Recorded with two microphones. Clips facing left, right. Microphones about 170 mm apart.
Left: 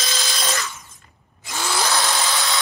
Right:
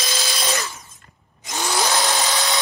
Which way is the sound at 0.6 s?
30° right (ahead or behind).